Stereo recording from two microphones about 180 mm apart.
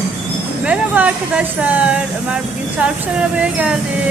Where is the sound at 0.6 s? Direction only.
5° right (ahead or behind).